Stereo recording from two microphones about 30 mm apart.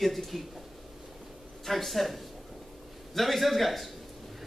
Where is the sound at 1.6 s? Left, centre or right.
Centre.